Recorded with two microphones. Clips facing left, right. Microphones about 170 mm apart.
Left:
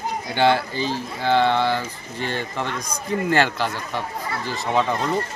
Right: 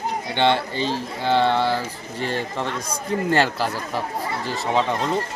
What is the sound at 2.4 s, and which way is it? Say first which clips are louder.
Speech: right 1 dB; centre (ahead or behind).